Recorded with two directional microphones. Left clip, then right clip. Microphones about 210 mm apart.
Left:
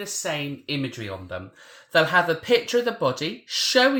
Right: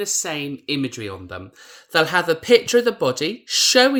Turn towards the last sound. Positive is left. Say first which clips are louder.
# right 4 dB
turn(degrees=-60)  # may be behind; listen again after turning